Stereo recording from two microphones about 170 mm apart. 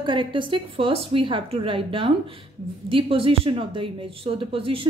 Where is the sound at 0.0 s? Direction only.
30° right (ahead or behind).